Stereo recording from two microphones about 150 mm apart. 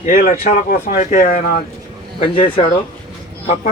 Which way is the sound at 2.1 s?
40° left (ahead or behind).